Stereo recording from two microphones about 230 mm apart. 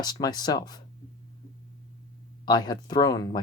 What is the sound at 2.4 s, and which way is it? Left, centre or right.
Speech, centre.